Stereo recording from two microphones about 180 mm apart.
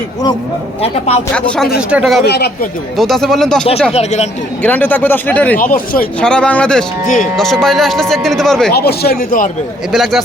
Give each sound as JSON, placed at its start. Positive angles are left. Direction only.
{"t": 0.8, "sound": "a man's voice", "side_deg": 35}
{"t": 1.3, "sound": "speech", "side_deg": 5}
{"t": 2.2, "sound": "speech", "side_deg": 65}
{"t": 3.0, "sound": "speech", "side_deg": 0}
{"t": 3.9, "sound": "a man's voice", "side_deg": 35}
{"t": 4.6, "sound": "speech", "side_deg": 10}
{"t": 5.5, "sound": "speech", "side_deg": 50}
{"t": 6.1, "sound": "speech", "side_deg": 5}
{"t": 8.7, "sound": "speech", "side_deg": 60}
{"t": 9.9, "sound": "speech", "side_deg": 0}